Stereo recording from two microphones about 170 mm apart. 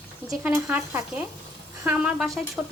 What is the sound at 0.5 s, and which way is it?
A woman's voice, 15° right (ahead or behind).